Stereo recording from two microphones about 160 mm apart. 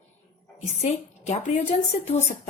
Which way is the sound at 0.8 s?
45° left (ahead or behind).